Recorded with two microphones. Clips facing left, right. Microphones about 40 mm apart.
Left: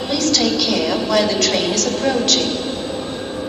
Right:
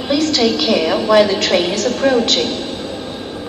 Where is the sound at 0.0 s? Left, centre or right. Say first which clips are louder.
Right 3 dB; centre.